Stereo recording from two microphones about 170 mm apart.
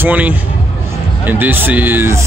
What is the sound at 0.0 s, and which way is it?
Speech, 10° right (ahead or behind).